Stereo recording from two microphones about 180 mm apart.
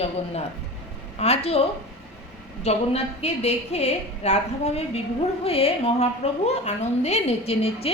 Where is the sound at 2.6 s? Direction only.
35° left (ahead or behind).